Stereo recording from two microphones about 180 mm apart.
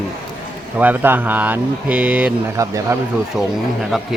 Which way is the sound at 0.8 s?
10° right (ahead or behind).